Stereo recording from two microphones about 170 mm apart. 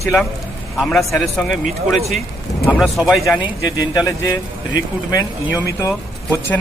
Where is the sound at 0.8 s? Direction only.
5° left (ahead or behind).